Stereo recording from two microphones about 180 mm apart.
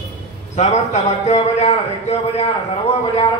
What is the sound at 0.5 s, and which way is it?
A man's voice, 40° left (ahead or behind).